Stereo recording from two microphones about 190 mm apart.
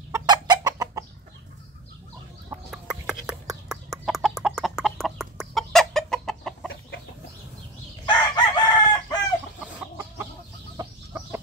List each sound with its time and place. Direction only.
0.1 s chicken: 20° right (ahead or behind)
2.7 s chicken: 5° right (ahead or behind)
8.1 s chicken: 20° left (ahead or behind)
9.7 s chicken: 5° right (ahead or behind)
10.8 s chicken: 20° right (ahead or behind)